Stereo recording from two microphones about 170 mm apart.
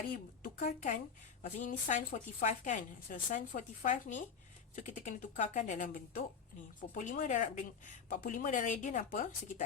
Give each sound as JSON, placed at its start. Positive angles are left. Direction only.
{"t": 0.4, "sound": "a woman's voice", "side_deg": 50}